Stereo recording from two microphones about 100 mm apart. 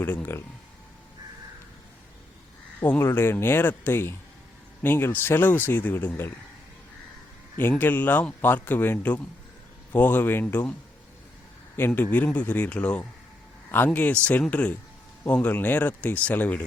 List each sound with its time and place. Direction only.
0.0 s speech: 20° left (ahead or behind)
2.8 s speech: 20° left (ahead or behind)
7.6 s speech: 20° left (ahead or behind)
11.9 s speech: 15° left (ahead or behind)